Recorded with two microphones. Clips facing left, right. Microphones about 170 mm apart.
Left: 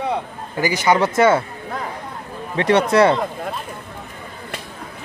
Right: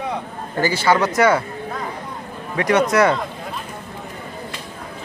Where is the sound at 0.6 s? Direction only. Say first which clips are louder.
Even; 15° left (ahead or behind).